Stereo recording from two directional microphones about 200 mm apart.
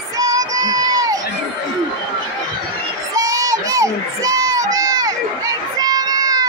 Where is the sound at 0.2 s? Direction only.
20° right (ahead or behind).